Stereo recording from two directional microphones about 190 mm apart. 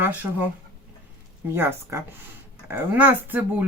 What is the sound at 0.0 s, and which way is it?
Speech, 10° right (ahead or behind).